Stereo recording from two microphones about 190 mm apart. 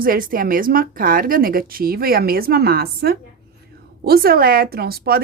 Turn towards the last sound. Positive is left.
turn(degrees=-55)  # may be behind; listen again after turning